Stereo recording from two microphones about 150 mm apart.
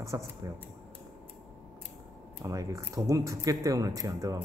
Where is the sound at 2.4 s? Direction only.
20° right (ahead or behind).